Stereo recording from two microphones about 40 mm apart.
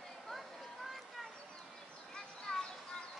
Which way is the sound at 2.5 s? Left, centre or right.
Left.